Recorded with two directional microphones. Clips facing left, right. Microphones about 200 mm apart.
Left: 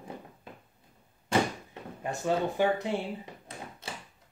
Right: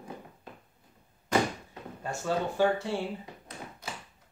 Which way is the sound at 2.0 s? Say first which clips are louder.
Left 2 dB; 15° left (ahead or behind).